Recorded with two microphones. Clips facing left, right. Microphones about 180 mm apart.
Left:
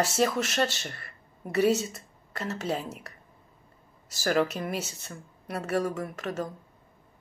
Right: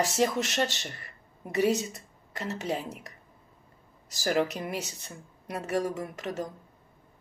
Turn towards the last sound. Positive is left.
turn(degrees=-15)  # may be behind; listen again after turning